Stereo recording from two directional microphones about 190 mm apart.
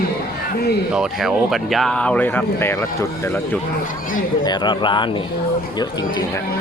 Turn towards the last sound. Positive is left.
turn(degrees=25)  # may be behind; listen again after turning